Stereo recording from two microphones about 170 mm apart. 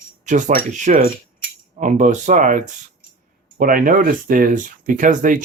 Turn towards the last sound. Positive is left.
turn(degrees=-50)  # may be behind; listen again after turning